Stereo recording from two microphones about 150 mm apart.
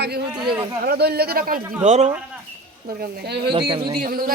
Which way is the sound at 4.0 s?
75° right (ahead or behind).